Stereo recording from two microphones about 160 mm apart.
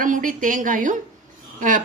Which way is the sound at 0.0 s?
55° right (ahead or behind).